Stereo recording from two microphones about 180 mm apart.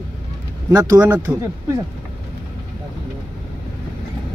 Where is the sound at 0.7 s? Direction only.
20° right (ahead or behind).